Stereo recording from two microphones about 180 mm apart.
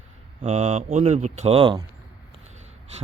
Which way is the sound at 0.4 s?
35° right (ahead or behind).